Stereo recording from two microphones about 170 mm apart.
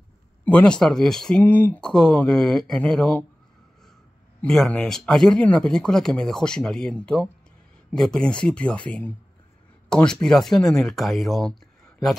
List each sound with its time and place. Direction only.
0.5 s speech: 5° left (ahead or behind)
4.4 s speech: 5° left (ahead or behind)